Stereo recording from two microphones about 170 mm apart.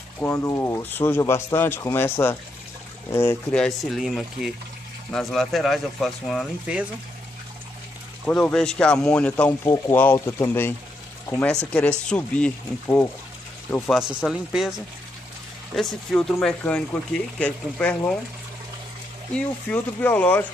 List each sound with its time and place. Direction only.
0.2 s speech: 15° left (ahead or behind)
3.5 s speech: centre (ahead or behind)
8.3 s speech: 5° left (ahead or behind)
13.9 s speech: centre (ahead or behind)
19.3 s speech: 10° left (ahead or behind)